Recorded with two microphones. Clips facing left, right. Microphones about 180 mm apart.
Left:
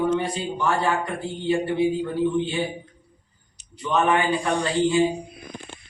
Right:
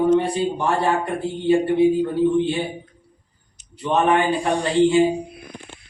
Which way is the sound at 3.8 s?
25° right (ahead or behind).